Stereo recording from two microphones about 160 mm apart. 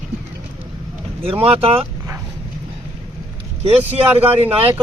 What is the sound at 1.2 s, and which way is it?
Speech, 35° right (ahead or behind).